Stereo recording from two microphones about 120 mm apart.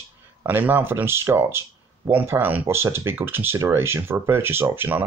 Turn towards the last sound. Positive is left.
turn(degrees=-15)  # may be behind; listen again after turning